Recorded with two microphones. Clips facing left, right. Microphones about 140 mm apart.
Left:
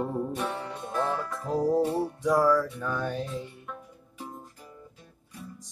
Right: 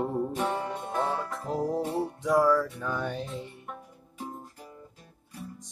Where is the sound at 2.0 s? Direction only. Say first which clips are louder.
Even; centre (ahead or behind).